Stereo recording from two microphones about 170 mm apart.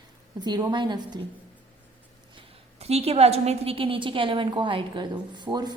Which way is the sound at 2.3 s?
35° right (ahead or behind).